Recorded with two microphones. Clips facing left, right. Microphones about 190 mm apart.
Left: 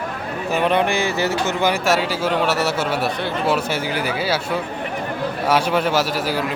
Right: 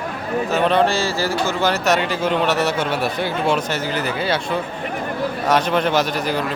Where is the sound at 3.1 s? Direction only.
5° right (ahead or behind).